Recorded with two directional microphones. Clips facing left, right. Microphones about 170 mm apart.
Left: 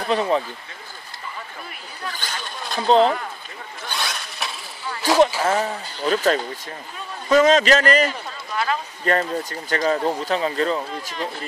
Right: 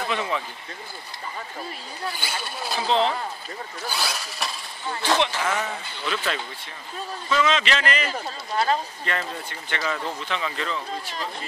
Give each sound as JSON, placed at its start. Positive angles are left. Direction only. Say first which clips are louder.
{"t": 0.0, "sound": "speech", "louder": "left 6 dB", "side_deg": 35}
{"t": 2.0, "sound": "speech", "louder": "even", "side_deg": -10}
{"t": 2.9, "sound": "speech", "louder": "left 7 dB", "side_deg": 40}
{"t": 3.8, "sound": "a sound", "louder": "left 1 dB", "side_deg": -5}
{"t": 5.4, "sound": "a man's voice", "louder": "left 5 dB", "side_deg": 35}
{"t": 8.1, "sound": "a sound", "louder": "right 1 dB", "side_deg": -35}
{"t": 9.0, "sound": "speech", "louder": "left 8 dB", "side_deg": 40}